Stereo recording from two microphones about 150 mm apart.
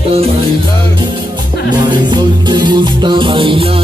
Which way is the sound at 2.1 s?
30° right (ahead or behind).